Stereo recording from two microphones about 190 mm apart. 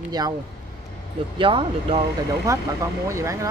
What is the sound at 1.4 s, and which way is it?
Speech, 25° right (ahead or behind).